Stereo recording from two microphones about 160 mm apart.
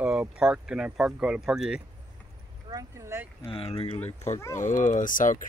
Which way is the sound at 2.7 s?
20° right (ahead or behind).